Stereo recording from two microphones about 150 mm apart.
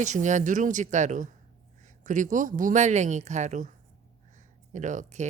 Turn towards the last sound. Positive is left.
turn(degrees=-55)  # may be behind; listen again after turning